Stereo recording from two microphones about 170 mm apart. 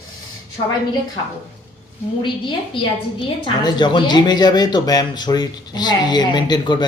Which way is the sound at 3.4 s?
25° left (ahead or behind).